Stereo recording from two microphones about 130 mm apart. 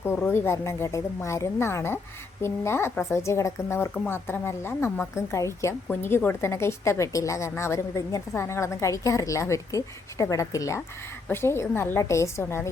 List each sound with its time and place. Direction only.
0.3 s a woman's voice: 20° left (ahead or behind)